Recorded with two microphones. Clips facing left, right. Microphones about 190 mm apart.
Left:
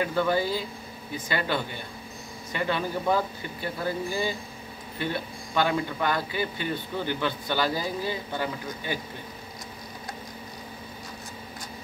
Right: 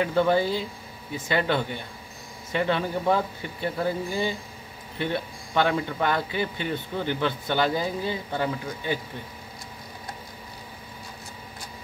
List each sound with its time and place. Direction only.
0.0 s a man's voice: 25° right (ahead or behind)